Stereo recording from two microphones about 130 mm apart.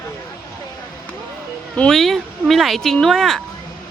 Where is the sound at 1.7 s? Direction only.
5° left (ahead or behind).